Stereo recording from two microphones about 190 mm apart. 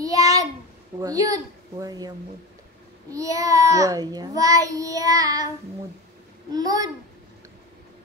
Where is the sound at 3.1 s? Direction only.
15° right (ahead or behind).